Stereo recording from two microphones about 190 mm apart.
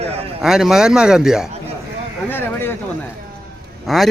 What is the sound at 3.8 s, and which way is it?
Speech, centre (ahead or behind).